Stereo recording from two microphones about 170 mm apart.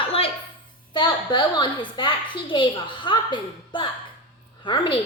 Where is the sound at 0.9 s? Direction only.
25° left (ahead or behind).